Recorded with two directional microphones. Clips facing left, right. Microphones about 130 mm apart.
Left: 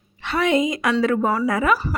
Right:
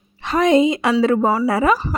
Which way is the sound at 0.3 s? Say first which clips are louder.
Right 5 dB; 35° right (ahead or behind).